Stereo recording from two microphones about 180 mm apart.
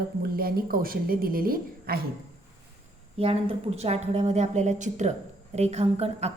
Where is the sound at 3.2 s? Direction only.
30° right (ahead or behind).